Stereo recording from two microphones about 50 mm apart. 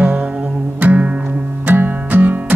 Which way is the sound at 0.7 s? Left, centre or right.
Right.